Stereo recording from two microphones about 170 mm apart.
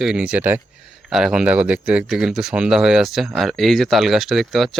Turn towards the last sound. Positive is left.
turn(degrees=0)  # may be behind; listen again after turning